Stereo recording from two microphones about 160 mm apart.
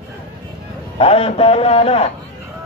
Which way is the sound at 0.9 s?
40° left (ahead or behind).